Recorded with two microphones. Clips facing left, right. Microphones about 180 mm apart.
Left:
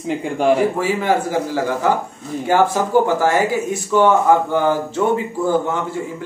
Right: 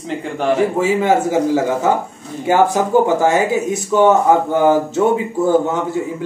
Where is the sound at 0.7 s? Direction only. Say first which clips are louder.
Right 4 dB; 20° right (ahead or behind).